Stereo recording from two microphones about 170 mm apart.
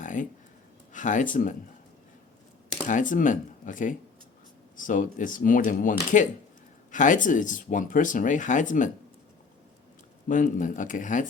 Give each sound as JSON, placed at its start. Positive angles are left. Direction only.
{"t": 0.0, "sound": "a sound", "side_deg": 50}
{"t": 0.9, "sound": "speech", "side_deg": 50}
{"t": 2.8, "sound": "speech", "side_deg": 50}
{"t": 10.2, "sound": "speech", "side_deg": 50}